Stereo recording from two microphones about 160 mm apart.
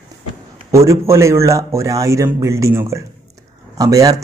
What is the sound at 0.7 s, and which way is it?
Speech, 20° right (ahead or behind).